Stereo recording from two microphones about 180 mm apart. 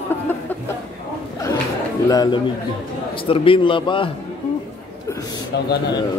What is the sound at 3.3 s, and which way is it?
Speech, 30° left (ahead or behind).